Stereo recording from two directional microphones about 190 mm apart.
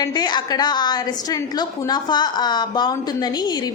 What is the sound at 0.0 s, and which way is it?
A woman's voice, 20° left (ahead or behind).